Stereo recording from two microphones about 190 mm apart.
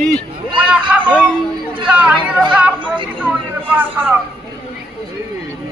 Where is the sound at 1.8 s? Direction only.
5° right (ahead or behind).